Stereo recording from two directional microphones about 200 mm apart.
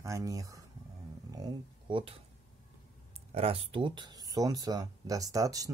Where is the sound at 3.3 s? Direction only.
30° right (ahead or behind).